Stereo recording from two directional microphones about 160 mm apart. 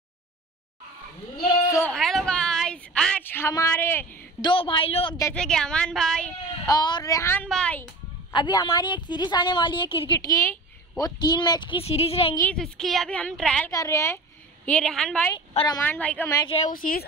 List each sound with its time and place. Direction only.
1.9 s a sound: centre (ahead or behind)
4.4 s a woman's voice: 30° left (ahead or behind)
5.3 s a woman's voice: 5° left (ahead or behind)
6.6 s a woman's voice: 25° left (ahead or behind)
7.4 s a woman's voice: 5° left (ahead or behind)
8.3 s a woman's voice: 30° left (ahead or behind)
11.8 s a woman's voice: 40° left (ahead or behind)
12.5 s a woman's voice: 5° left (ahead or behind)
13.7 s a woman's voice: 20° left (ahead or behind)
14.7 s a woman's voice: 5° left (ahead or behind)
15.3 s a woman's voice: 30° left (ahead or behind)
15.8 s a woman's voice: 10° left (ahead or behind)
16.6 s speech: 60° left (ahead or behind)